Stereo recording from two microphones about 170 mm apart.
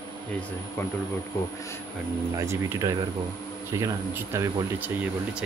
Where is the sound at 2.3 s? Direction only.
15° right (ahead or behind).